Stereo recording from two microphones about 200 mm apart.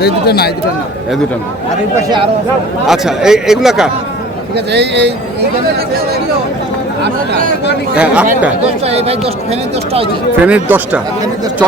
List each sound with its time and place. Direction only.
0.0 s speech: 55° left (ahead or behind)
2.0 s speech: 20° right (ahead or behind)
2.8 s speech: centre (ahead or behind)
4.5 s speech: 60° right (ahead or behind)
7.9 s speech: 5° right (ahead or behind)
8.8 s speech: 30° right (ahead or behind)
10.4 s speech: 5° right (ahead or behind)